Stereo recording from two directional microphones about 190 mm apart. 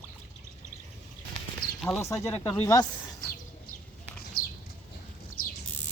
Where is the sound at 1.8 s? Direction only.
Centre (ahead or behind).